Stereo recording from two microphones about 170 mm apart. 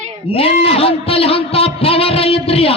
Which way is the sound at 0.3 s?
35° left (ahead or behind).